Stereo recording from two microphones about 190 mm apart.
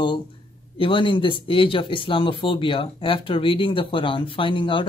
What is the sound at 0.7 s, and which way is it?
Speech, 25° left (ahead or behind).